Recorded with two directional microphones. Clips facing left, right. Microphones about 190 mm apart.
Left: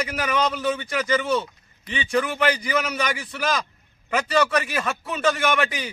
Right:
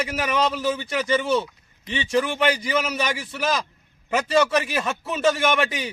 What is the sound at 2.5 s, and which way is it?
Speech, 5° right (ahead or behind).